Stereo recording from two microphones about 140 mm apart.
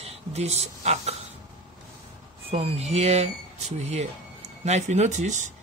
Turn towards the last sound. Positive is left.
turn(degrees=-60)  # may be behind; listen again after turning